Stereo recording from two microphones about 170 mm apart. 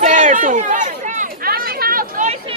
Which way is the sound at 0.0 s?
50° right (ahead or behind).